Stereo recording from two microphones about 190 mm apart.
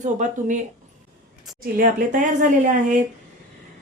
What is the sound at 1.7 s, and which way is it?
A woman's voice, 45° right (ahead or behind).